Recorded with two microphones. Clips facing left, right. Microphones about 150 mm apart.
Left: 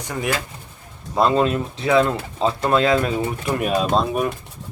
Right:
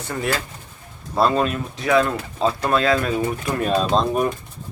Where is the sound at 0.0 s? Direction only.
15° left (ahead or behind).